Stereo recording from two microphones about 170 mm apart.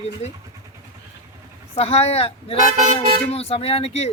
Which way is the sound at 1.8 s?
35° left (ahead or behind).